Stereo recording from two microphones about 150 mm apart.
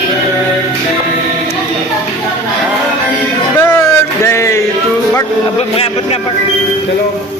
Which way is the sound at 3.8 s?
20° left (ahead or behind).